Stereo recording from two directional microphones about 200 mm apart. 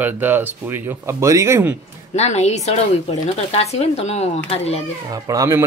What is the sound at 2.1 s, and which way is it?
Speech, 35° left (ahead or behind).